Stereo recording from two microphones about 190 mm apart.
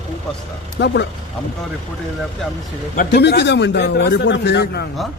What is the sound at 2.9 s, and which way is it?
Speech, 60° left (ahead or behind).